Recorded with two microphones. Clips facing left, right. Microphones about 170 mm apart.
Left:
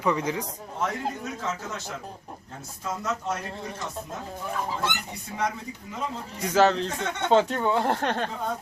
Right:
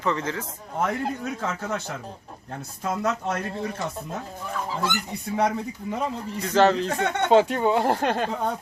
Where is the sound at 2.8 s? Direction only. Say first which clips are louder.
Right 4 dB; 60° right (ahead or behind).